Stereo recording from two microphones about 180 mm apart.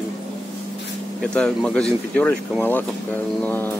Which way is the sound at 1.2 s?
5° left (ahead or behind).